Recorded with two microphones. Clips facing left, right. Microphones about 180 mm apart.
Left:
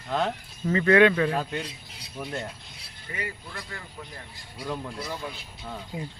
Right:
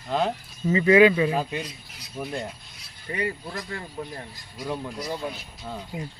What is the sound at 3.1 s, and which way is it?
Speech, 30° right (ahead or behind).